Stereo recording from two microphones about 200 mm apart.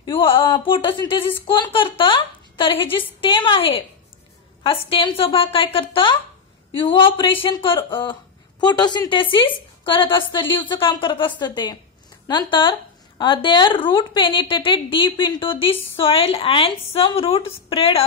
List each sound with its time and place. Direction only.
0.0 s a woman's voice: 25° left (ahead or behind)